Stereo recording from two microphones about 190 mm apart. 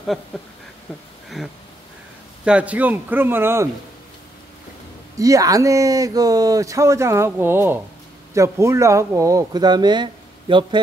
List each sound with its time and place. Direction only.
1.4 s speech: centre (ahead or behind)
5.1 s speech: 15° right (ahead or behind)